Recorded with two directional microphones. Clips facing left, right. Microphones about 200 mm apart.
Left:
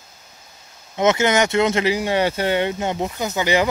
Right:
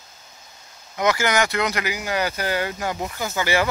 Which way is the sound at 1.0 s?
20° left (ahead or behind).